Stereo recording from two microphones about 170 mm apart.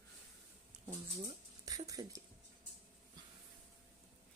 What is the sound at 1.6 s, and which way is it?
Speech, 20° right (ahead or behind).